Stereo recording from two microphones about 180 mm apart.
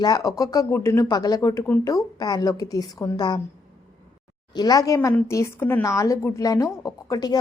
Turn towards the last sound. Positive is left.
turn(degrees=20)  # may be behind; listen again after turning